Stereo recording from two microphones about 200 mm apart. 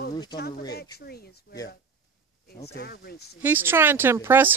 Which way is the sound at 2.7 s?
50° left (ahead or behind).